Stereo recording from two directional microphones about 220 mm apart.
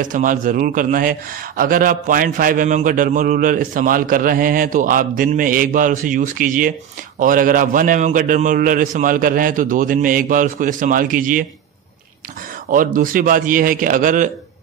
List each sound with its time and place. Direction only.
0.0 s a man's voice: 35° right (ahead or behind)
12.7 s a man's voice: 40° right (ahead or behind)